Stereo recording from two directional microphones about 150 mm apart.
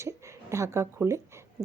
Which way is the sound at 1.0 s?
20° right (ahead or behind).